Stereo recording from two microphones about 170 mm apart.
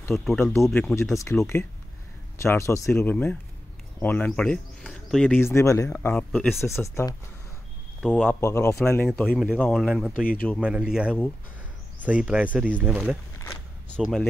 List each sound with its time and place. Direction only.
0.0 s speech: centre (ahead or behind)
0.4 s speech: 15° left (ahead or behind)
8.0 s a man's voice: centre (ahead or behind)
8.3 s speech: 15° left (ahead or behind)
9.8 s speech: centre (ahead or behind)